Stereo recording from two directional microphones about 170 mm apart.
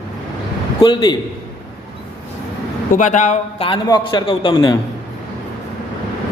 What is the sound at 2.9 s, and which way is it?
Speech, 45° left (ahead or behind).